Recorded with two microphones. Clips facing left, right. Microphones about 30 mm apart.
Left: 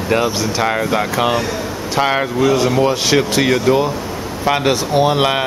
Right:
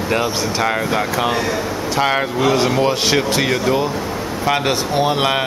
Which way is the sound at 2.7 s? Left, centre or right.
Centre.